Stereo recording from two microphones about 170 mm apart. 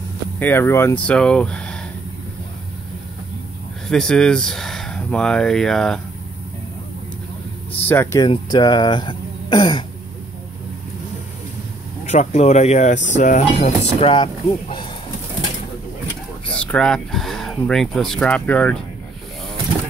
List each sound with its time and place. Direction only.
0.4 s speech: 15° left (ahead or behind)
3.8 s speech: 5° left (ahead or behind)
7.8 s speech: 15° left (ahead or behind)
12.1 s speech: 40° left (ahead or behind)
16.4 s speech: 5° left (ahead or behind)